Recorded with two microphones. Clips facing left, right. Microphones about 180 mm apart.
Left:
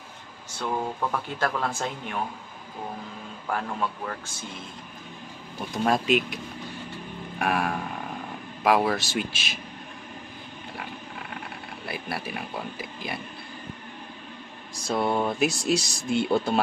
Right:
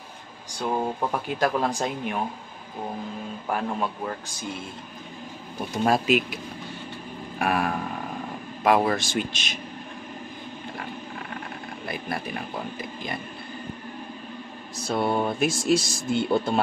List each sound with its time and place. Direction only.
0.5 s a sound: 15° right (ahead or behind)
1.4 s speech: 15° right (ahead or behind)
3.4 s speech: 15° right (ahead or behind)
5.9 s speech: 5° right (ahead or behind)
7.3 s a sound: centre (ahead or behind)
8.6 s speech: centre (ahead or behind)
11.8 s speech: 5° left (ahead or behind)
14.9 s speech: centre (ahead or behind)